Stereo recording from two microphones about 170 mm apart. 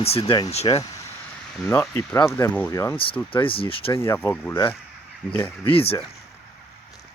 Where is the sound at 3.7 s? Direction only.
30° left (ahead or behind).